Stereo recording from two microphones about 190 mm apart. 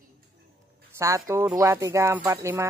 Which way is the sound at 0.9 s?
15° right (ahead or behind).